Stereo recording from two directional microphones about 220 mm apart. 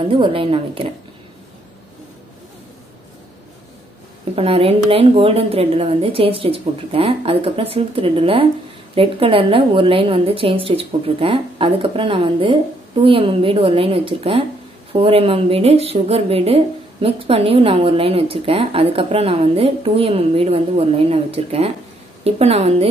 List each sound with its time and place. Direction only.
0.1 s a woman's voice: 25° right (ahead or behind)
4.4 s a woman's voice: 25° right (ahead or behind)